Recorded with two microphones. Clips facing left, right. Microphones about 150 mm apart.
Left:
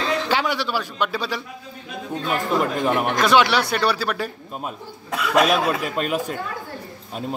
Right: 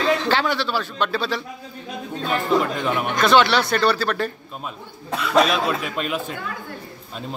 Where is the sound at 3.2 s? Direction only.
10° left (ahead or behind).